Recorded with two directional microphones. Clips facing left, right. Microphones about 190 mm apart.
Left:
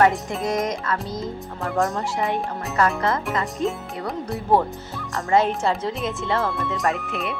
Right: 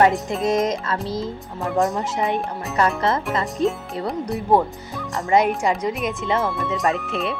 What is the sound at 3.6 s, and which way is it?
Speech, 35° right (ahead or behind).